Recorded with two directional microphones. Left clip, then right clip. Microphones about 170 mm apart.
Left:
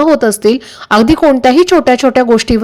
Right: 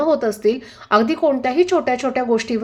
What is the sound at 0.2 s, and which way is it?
Speech, 40° left (ahead or behind).